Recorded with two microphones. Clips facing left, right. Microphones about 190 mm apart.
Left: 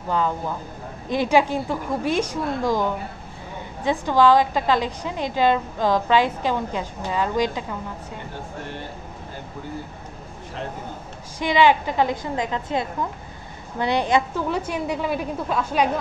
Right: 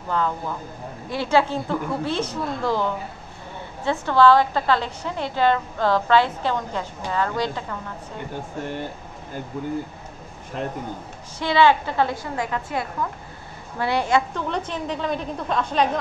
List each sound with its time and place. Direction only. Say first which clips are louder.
0.1 s a woman's voice: left 1 dB; 15° left (ahead or behind)
11.3 s a woman's voice: even; 15° left (ahead or behind)
14.3 s a woman's voice: left 2 dB; 10° left (ahead or behind)